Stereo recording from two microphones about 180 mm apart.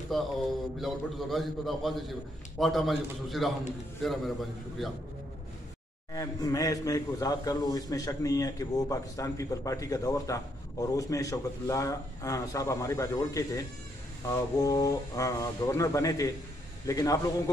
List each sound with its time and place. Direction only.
0.1 s a man's voice: centre (ahead or behind)
6.1 s a man's voice: 20° left (ahead or behind)